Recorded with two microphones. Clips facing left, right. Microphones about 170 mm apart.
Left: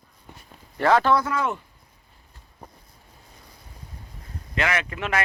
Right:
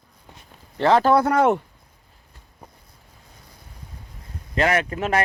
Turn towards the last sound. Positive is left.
turn(degrees=-40)  # may be behind; listen again after turning